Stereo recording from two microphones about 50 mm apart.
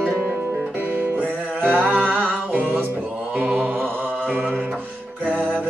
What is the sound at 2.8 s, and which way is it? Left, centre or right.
Mantra, right.